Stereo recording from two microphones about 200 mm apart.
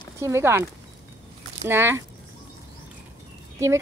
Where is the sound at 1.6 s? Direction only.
10° right (ahead or behind).